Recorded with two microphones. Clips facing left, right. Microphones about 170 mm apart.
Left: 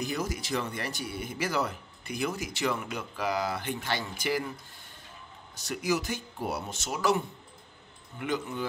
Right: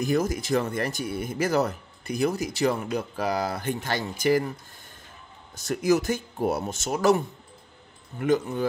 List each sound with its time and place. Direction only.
0.0 s speech: 50° right (ahead or behind)
5.6 s speech: 45° right (ahead or behind)
8.2 s speech: 45° right (ahead or behind)